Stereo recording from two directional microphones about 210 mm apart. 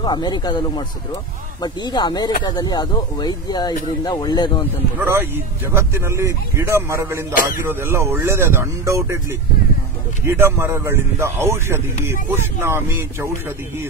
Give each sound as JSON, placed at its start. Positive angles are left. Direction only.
{"t": 0.0, "sound": "speech", "side_deg": 20}
{"t": 4.9, "sound": "a man's voice", "side_deg": -10}
{"t": 10.2, "sound": "a man's voice", "side_deg": -10}